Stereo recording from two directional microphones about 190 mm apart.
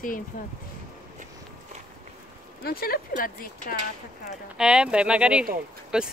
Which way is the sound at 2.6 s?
50° left (ahead or behind).